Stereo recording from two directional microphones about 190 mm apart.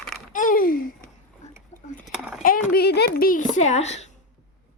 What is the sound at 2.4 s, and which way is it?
Speech, 50° left (ahead or behind).